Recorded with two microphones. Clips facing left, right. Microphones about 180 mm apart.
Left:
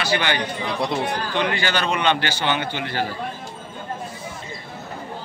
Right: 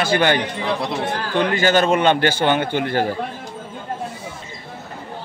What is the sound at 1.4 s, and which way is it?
A man's voice, 45° right (ahead or behind).